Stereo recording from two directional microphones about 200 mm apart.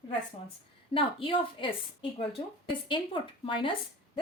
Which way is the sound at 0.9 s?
25° left (ahead or behind).